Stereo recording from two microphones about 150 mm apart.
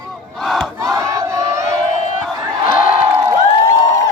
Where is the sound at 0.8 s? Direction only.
20° right (ahead or behind).